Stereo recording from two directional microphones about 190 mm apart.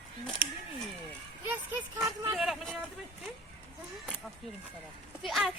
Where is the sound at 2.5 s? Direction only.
Centre (ahead or behind).